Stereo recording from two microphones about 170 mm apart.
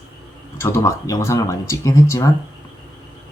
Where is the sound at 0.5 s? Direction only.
15° left (ahead or behind).